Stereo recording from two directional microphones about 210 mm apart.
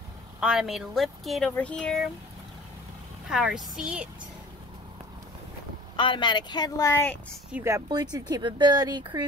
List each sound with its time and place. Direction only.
0.4 s speech: centre (ahead or behind)
3.3 s speech: 5° right (ahead or behind)
5.9 s speech: 25° left (ahead or behind)
7.5 s speech: 15° right (ahead or behind)